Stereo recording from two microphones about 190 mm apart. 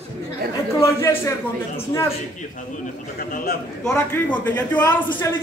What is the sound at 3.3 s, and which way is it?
Speech, 50° left (ahead or behind).